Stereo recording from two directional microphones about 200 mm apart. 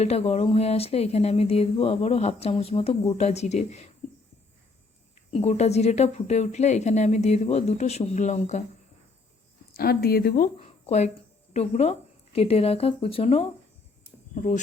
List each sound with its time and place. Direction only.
0.0 s speech: 30° left (ahead or behind)
5.3 s speech: 30° left (ahead or behind)
9.7 s a woman's voice: 50° left (ahead or behind); by 13.5 s 30° left (ahead or behind)